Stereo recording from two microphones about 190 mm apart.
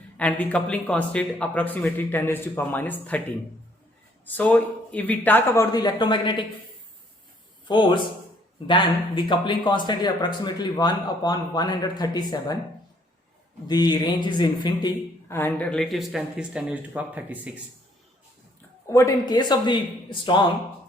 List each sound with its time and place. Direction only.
0.2 s speech: 5° left (ahead or behind)
4.4 s speech: 5° left (ahead or behind)
5.7 s speech: 20° left (ahead or behind)
7.7 s speech: 25° left (ahead or behind)
13.7 s speech: 20° left (ahead or behind); by 17.5 s 5° right (ahead or behind)
18.9 s speech: 15° left (ahead or behind)